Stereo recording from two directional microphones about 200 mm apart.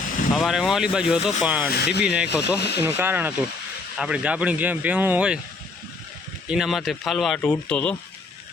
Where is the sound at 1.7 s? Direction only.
55° left (ahead or behind).